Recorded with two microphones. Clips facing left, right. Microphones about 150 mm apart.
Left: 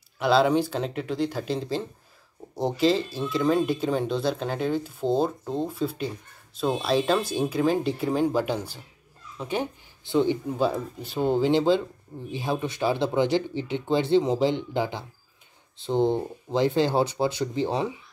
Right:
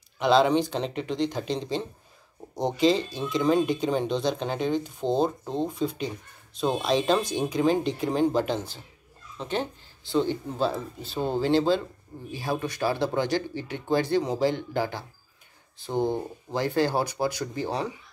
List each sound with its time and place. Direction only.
0.2 s speech: 5° left (ahead or behind); by 17.9 s 20° left (ahead or behind)